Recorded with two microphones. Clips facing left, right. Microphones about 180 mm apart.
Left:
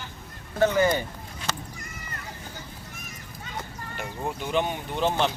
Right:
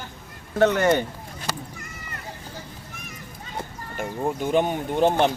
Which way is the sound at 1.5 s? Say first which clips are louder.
Right 2 dB; 10° right (ahead or behind).